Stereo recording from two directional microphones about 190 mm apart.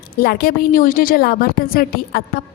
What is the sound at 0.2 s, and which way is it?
A woman's voice, 55° left (ahead or behind).